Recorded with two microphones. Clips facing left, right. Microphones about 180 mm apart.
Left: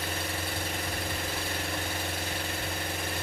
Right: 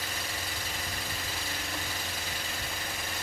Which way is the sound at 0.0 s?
55° left (ahead or behind).